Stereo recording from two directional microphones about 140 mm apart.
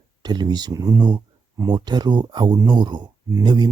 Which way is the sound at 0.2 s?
30° right (ahead or behind).